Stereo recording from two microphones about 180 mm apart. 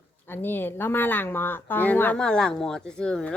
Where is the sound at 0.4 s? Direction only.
10° left (ahead or behind).